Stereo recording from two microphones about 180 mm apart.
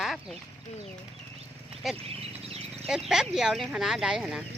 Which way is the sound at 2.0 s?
35° right (ahead or behind).